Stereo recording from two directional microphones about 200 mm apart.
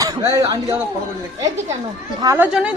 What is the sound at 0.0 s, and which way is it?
Speech, 15° right (ahead or behind).